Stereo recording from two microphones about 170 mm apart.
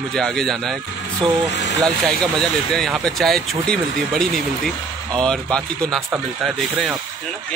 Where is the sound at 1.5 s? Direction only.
90° left.